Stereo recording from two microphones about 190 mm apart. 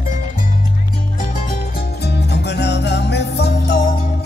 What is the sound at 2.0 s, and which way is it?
Music, 60° left (ahead or behind).